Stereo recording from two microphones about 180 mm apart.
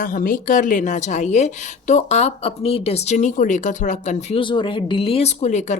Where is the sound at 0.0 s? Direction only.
50° left (ahead or behind).